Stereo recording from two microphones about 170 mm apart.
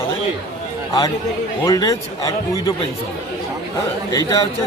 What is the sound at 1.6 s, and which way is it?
Speech, 20° left (ahead or behind).